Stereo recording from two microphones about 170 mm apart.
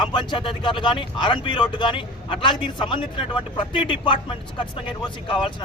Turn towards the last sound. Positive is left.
turn(degrees=30)  # may be behind; listen again after turning